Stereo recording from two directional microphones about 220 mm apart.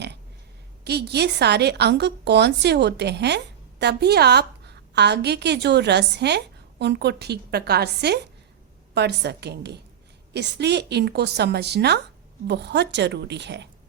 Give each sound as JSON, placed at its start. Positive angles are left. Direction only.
{"t": 0.9, "sound": "a woman's voice", "side_deg": -50}